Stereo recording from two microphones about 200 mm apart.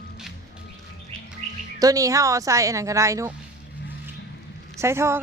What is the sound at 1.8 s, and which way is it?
Speech, 15° right (ahead or behind).